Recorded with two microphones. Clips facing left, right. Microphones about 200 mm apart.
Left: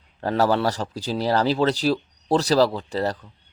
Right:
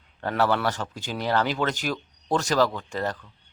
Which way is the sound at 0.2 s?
35° left (ahead or behind).